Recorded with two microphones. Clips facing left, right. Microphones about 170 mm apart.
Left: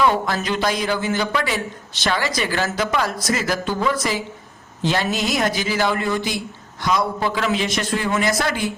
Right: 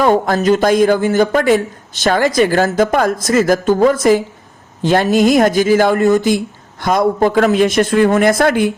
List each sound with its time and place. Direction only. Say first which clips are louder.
0.0 s speech: right 7 dB; 45° right (ahead or behind)